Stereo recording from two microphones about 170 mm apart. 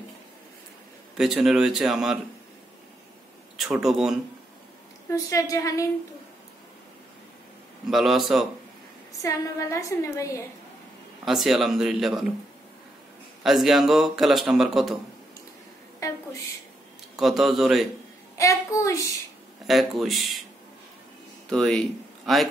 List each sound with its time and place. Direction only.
1.1 s a man's voice: centre (ahead or behind)
3.5 s a man's voice: centre (ahead or behind)
5.1 s a woman's voice: 20° left (ahead or behind)
7.9 s a man's voice: centre (ahead or behind)
9.2 s a woman's voice: 20° left (ahead or behind)
11.2 s a man's voice: centre (ahead or behind)
13.4 s a man's voice: centre (ahead or behind)
17.2 s a man's voice: centre (ahead or behind)
18.4 s a child's voice: 20° left (ahead or behind)
19.6 s a man's voice: centre (ahead or behind)
21.5 s speech: 5° left (ahead or behind)